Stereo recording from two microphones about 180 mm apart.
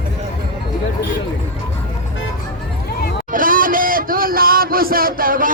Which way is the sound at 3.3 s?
50° right (ahead or behind).